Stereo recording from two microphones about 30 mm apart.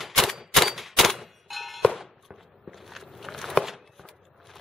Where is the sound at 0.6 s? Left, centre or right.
Centre.